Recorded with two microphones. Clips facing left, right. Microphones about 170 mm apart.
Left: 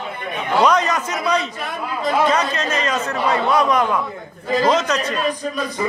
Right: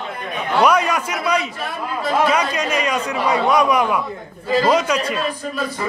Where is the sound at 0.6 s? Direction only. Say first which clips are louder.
Right 1 dB; 10° right (ahead or behind).